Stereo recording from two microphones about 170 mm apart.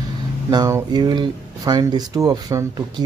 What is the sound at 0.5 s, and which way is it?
Speech, 20° right (ahead or behind).